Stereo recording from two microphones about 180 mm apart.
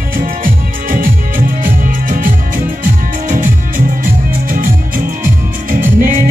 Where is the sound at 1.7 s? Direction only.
50° right (ahead or behind).